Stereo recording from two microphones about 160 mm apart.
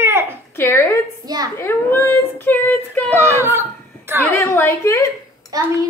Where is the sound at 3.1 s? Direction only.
15° right (ahead or behind).